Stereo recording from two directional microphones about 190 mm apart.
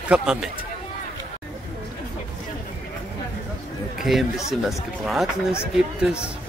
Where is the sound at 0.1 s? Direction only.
5° right (ahead or behind).